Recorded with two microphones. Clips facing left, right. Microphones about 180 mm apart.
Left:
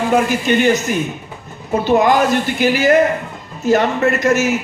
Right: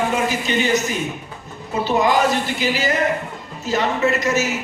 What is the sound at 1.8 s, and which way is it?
A man's voice, 55° left (ahead or behind).